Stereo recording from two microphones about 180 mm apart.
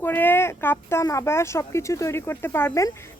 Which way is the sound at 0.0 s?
10° left (ahead or behind).